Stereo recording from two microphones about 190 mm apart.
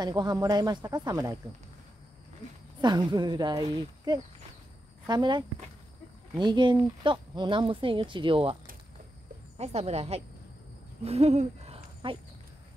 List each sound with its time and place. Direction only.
0.0 s speech: 20° right (ahead or behind)
2.8 s speech: 20° right (ahead or behind)
9.6 s speech: 35° right (ahead or behind)
11.1 s hoot: 35° right (ahead or behind)